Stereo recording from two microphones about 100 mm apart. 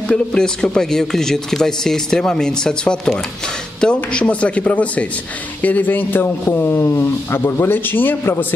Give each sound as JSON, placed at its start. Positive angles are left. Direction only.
{"t": 0.1, "sound": "speech", "side_deg": 5}